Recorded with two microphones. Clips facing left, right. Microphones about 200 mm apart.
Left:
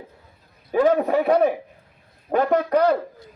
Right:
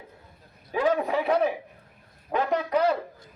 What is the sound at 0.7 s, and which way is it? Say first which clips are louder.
A man's voice: left 6 dB; 45° left (ahead or behind).